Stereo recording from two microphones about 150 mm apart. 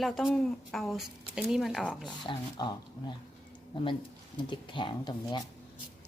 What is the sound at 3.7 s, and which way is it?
A woman's voice, 35° left (ahead or behind).